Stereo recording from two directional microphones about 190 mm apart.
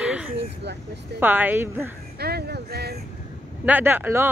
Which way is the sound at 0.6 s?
65° right (ahead or behind).